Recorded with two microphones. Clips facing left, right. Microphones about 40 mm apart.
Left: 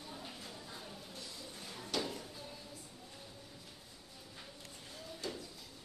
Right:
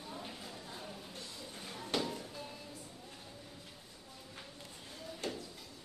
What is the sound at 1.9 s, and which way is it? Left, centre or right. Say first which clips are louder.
Music: right 2 dB; right.